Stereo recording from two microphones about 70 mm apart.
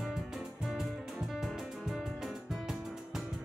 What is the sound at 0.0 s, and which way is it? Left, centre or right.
Music, centre.